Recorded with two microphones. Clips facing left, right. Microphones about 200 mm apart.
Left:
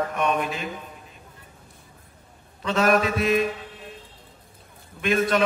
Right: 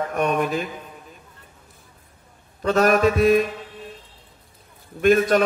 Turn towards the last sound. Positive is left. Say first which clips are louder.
# right 6 dB
turn(degrees=-45)  # may be behind; listen again after turning